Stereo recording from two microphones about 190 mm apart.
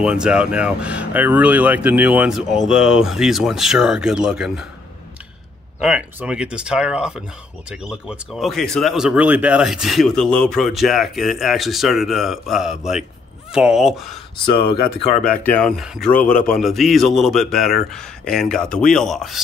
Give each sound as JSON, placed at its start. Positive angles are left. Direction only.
{"t": 0.0, "sound": "speech", "side_deg": -5}
{"t": 5.8, "sound": "speech", "side_deg": -5}
{"t": 14.5, "sound": "speech", "side_deg": 25}
{"t": 15.1, "sound": "speech", "side_deg": 5}